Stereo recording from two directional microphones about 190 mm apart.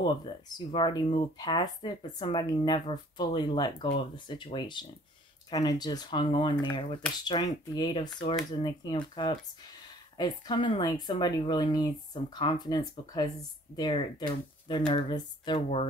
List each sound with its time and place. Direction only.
0.0 s speech: 25° left (ahead or behind)